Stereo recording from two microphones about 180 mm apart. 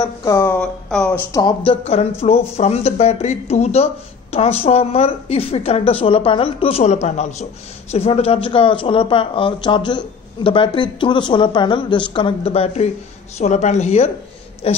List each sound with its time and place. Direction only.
0.0 s speech: 20° left (ahead or behind)
1.7 s speech: 35° left (ahead or behind)